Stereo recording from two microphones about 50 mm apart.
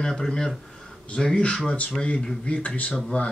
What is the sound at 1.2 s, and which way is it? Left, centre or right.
Speech, centre.